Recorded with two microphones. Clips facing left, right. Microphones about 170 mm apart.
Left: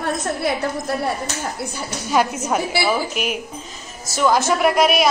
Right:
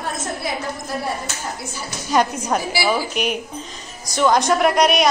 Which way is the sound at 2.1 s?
5° left (ahead or behind).